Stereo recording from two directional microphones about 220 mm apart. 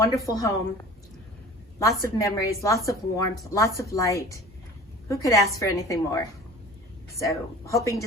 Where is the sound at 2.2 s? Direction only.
15° left (ahead or behind).